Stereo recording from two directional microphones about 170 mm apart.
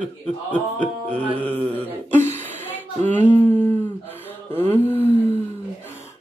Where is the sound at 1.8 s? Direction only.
10° left (ahead or behind).